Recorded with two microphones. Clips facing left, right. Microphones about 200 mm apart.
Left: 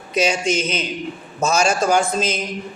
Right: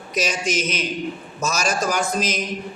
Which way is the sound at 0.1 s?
30° left (ahead or behind).